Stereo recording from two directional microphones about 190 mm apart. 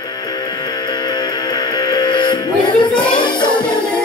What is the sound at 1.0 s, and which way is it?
Music, 20° left (ahead or behind).